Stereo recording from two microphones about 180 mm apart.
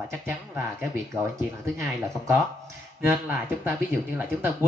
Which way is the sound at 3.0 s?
10° right (ahead or behind).